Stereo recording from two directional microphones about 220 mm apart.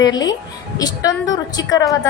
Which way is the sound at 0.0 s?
15° left (ahead or behind).